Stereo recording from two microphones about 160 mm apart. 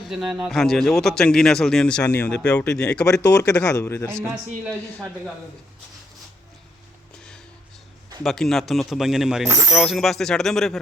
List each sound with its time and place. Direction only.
0.0 s speech: 5° right (ahead or behind)
3.2 s speech: 25° left (ahead or behind)
4.2 s speech: centre (ahead or behind)
4.8 s speech: 20° right (ahead or behind)
8.2 s speech: centre (ahead or behind)